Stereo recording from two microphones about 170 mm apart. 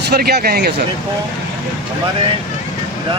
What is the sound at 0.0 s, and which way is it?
Speech, 65° right (ahead or behind).